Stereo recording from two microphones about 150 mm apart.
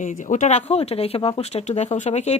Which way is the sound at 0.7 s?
45° left (ahead or behind).